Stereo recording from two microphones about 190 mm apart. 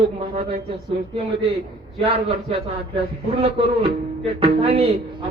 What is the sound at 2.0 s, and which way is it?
Speech, 30° right (ahead or behind).